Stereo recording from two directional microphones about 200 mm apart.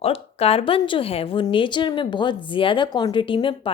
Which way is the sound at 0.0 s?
30° left (ahead or behind).